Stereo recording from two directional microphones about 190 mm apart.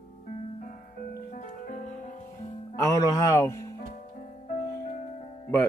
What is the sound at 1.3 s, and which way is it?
Music, 45° left (ahead or behind).